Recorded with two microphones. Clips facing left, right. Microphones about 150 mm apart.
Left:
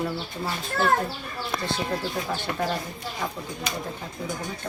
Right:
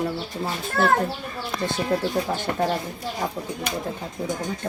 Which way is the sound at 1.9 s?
30° right (ahead or behind).